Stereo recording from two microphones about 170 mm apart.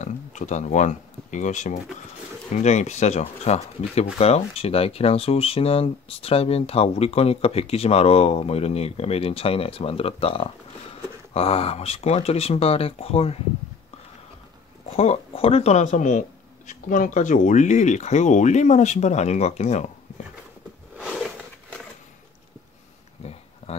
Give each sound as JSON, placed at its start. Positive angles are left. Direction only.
{"t": 0.0, "sound": "speech", "side_deg": 45}
{"t": 15.0, "sound": "speech", "side_deg": 35}
{"t": 23.2, "sound": "a sound", "side_deg": 35}